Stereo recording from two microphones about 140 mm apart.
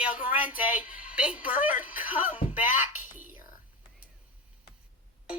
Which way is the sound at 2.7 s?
65° left (ahead or behind).